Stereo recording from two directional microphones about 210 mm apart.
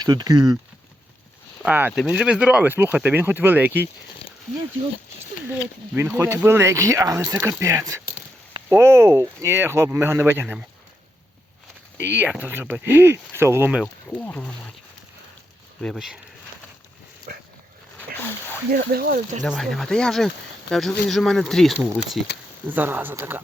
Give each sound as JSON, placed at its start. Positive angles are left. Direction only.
{"t": 0.0, "sound": "speech", "side_deg": -20}
{"t": 1.6, "sound": "speech", "side_deg": -5}
{"t": 5.9, "sound": "speech", "side_deg": -5}
{"t": 12.0, "sound": "speech", "side_deg": -10}
{"t": 15.8, "sound": "speech", "side_deg": 0}
{"t": 18.8, "sound": "speech", "side_deg": -45}
{"t": 19.4, "sound": "speech", "side_deg": 0}